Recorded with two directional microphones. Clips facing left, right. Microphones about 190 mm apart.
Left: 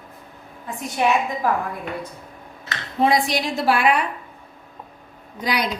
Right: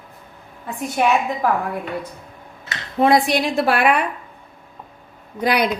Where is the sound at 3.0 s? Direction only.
55° right (ahead or behind).